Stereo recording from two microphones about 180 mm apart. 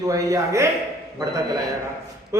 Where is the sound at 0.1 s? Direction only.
15° right (ahead or behind).